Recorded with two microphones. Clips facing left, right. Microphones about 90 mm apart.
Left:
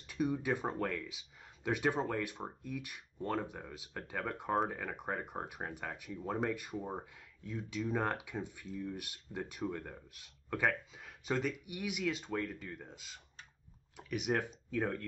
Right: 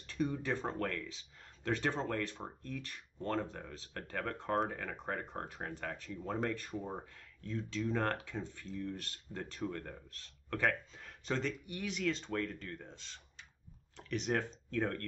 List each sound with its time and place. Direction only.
0.0 s speech: 15° left (ahead or behind)